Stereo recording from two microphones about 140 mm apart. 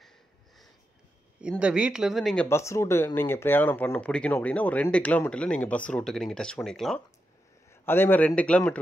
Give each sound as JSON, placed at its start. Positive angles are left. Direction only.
{"t": 1.6, "sound": "speech", "side_deg": -5}
{"t": 2.4, "sound": "speech", "side_deg": 20}
{"t": 7.8, "sound": "speech", "side_deg": 15}